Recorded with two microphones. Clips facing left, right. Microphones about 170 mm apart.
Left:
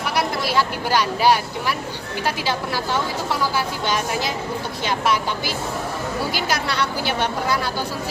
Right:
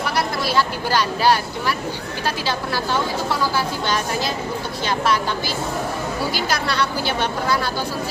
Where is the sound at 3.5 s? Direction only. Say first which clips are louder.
Right 1 dB; 20° left (ahead or behind).